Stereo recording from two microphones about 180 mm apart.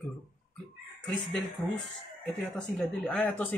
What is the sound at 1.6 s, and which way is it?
Speech, 25° left (ahead or behind).